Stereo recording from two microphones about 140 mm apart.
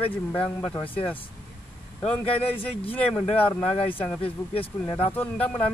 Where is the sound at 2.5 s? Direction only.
40° left (ahead or behind).